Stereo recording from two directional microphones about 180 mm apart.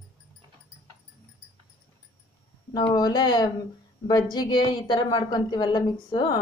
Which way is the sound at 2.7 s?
25° left (ahead or behind).